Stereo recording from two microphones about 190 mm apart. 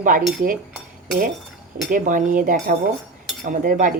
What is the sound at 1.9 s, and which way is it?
Speech, 45° right (ahead or behind).